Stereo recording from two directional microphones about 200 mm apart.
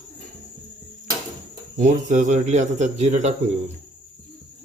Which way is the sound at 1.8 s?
40° right (ahead or behind).